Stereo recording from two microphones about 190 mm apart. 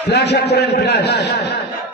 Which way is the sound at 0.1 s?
60° left (ahead or behind).